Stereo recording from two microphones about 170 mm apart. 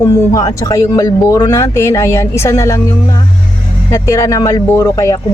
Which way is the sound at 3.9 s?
15° left (ahead or behind).